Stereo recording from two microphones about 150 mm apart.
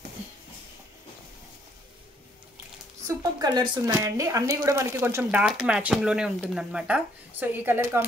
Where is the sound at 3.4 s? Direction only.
30° right (ahead or behind).